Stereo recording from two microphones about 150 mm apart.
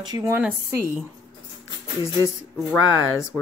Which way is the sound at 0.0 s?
25° right (ahead or behind).